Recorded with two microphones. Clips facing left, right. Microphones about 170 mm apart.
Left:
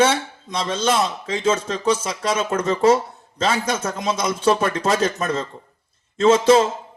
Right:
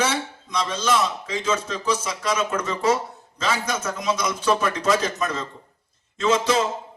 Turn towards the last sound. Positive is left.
turn(degrees=30)  # may be behind; listen again after turning